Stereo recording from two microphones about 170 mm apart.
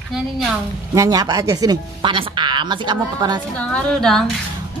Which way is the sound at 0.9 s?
20° right (ahead or behind).